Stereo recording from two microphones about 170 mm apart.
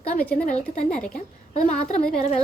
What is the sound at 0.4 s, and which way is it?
Speech, 45° left (ahead or behind).